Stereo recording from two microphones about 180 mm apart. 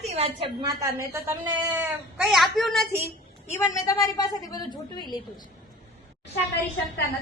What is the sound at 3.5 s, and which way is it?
A woman's voice, 20° left (ahead or behind).